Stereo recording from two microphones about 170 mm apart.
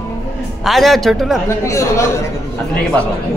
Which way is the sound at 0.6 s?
Centre (ahead or behind).